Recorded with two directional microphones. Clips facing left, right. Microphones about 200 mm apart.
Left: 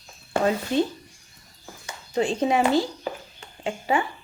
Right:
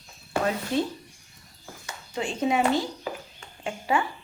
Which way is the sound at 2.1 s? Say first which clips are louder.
Left 3 dB; 35° left (ahead or behind).